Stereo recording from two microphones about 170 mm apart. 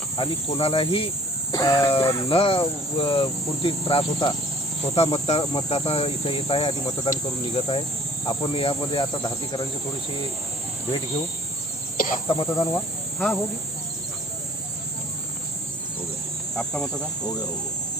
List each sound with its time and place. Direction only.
0.2 s cricket: 35° left (ahead or behind)
1.5 s speech: 25° left (ahead or behind)
2.3 s cricket: 30° left (ahead or behind)
8.3 s speech: 30° left (ahead or behind)
11.9 s cricket: 55° left (ahead or behind)
12.3 s speech: 25° left (ahead or behind)
13.1 s speech: 5° left (ahead or behind)
16.6 s cricket: 5° left (ahead or behind)